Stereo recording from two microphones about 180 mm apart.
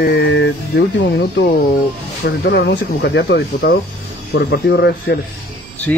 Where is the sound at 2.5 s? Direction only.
70° left (ahead or behind).